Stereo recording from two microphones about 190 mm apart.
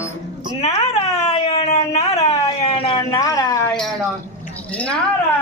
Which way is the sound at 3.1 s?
15° left (ahead or behind).